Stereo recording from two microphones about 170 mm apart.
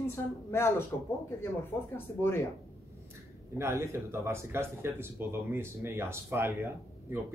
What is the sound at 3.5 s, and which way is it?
Speech, 15° right (ahead or behind).